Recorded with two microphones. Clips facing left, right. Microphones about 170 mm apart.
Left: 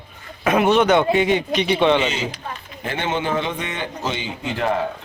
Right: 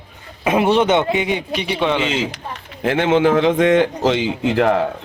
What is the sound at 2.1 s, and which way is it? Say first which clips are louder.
A man's voice: right 4 dB; 90° right.